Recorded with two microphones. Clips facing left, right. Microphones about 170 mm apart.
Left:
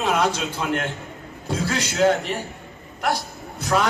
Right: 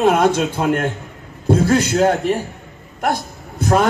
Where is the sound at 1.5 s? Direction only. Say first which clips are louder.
Right 11 dB; 55° right (ahead or behind).